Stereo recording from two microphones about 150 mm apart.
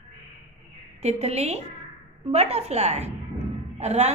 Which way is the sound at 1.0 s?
45° right (ahead or behind).